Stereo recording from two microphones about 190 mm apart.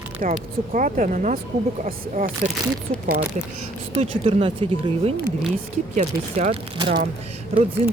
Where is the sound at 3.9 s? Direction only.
30° right (ahead or behind).